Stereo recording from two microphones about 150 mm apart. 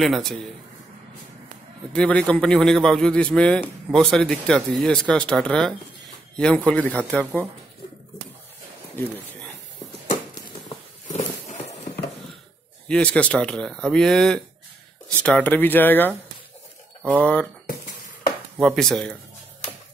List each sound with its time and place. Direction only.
0.0 s speech: centre (ahead or behind)
1.9 s speech: 10° left (ahead or behind)
9.0 s speech: 15° left (ahead or behind)
11.1 s roaring cats: 50° left (ahead or behind)
12.8 s speech: 5° left (ahead or behind)
17.2 s speech: 10° left (ahead or behind)
18.6 s speech: centre (ahead or behind)